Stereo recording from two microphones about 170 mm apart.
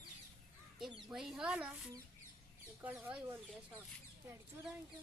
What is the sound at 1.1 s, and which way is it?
Speech, centre (ahead or behind).